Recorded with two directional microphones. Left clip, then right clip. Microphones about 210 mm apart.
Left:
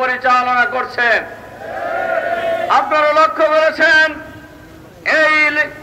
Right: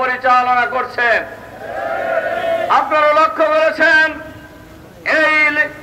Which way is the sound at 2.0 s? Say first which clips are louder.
Left 1 dB; 40° left (ahead or behind).